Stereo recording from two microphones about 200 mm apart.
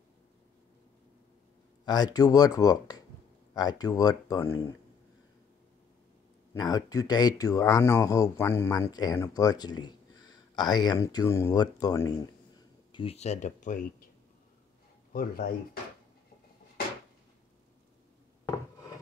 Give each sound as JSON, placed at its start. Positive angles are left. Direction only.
{"t": 1.9, "sound": "speech", "side_deg": 20}
{"t": 6.5, "sound": "speech", "side_deg": 20}
{"t": 15.1, "sound": "speech", "side_deg": 45}